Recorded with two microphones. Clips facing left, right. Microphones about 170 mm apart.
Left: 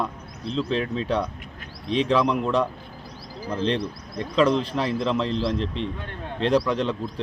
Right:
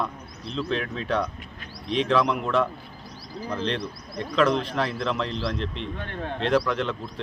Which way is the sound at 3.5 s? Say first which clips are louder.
Left 4 dB; 15° left (ahead or behind).